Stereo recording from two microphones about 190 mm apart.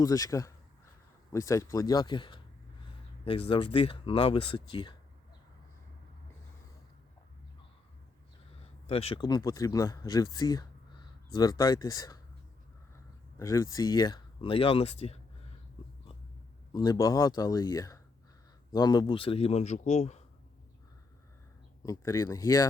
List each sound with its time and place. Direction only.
0.0 s speech: 20° left (ahead or behind)
8.9 s speech: 30° left (ahead or behind)
13.4 s speech: 15° left (ahead or behind); by 15.2 s 30° left (ahead or behind)
16.7 s a man's voice: 20° left (ahead or behind); by 20.2 s 35° left (ahead or behind)
21.8 s speech: 15° left (ahead or behind)